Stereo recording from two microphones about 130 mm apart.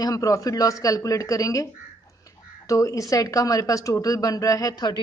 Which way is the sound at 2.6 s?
25° left (ahead or behind).